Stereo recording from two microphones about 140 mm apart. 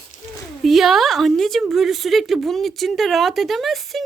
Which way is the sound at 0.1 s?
65° left (ahead or behind).